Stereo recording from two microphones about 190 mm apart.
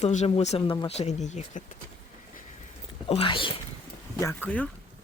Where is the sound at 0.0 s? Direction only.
35° left (ahead or behind).